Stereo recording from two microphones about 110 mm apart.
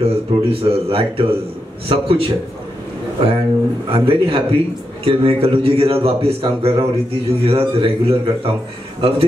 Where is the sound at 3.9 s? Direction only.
55° right (ahead or behind).